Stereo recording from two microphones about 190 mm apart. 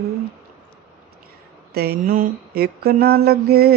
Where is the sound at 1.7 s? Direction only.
55° right (ahead or behind).